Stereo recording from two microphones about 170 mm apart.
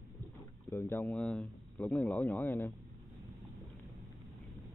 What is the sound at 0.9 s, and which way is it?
Speech, 5° left (ahead or behind).